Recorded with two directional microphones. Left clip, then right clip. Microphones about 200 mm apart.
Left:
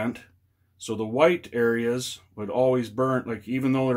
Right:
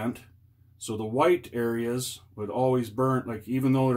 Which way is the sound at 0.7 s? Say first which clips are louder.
Left 3 dB; 35° left (ahead or behind).